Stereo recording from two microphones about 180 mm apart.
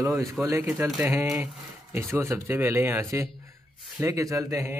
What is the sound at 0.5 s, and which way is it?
Speech, 15° right (ahead or behind).